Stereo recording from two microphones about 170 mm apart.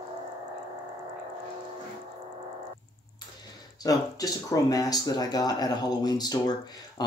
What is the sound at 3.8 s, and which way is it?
Speech, 20° left (ahead or behind).